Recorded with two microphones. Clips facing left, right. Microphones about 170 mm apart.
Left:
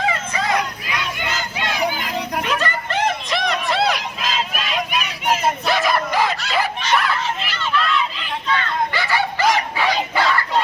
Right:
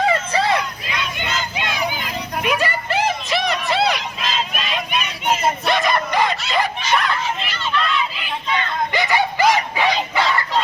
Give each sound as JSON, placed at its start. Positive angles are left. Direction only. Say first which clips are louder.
{"t": 0.1, "sound": "crowd", "louder": "right 3 dB", "side_deg": -30}
{"t": 8.2, "sound": "bow-wow", "louder": "left 1 dB", "side_deg": -15}